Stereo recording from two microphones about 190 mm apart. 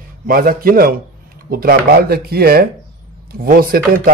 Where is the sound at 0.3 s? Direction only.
50° right (ahead or behind).